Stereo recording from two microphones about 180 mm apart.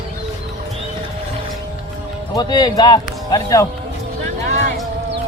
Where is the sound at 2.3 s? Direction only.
25° left (ahead or behind).